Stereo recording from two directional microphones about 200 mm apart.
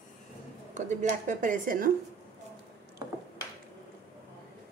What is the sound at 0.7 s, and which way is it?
A woman's voice, 40° right (ahead or behind).